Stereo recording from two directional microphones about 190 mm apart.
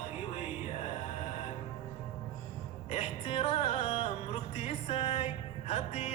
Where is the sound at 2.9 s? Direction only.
30° left (ahead or behind).